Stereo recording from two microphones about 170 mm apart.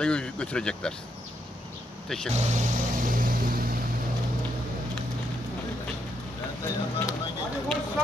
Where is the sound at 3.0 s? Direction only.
55° right (ahead or behind).